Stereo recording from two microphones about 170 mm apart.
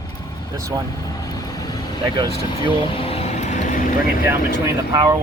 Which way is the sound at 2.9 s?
35° left (ahead or behind).